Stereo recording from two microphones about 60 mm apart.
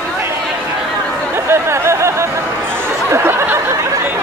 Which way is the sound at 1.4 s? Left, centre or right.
Right.